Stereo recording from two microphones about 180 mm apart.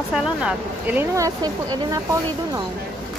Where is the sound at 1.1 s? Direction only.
15° right (ahead or behind).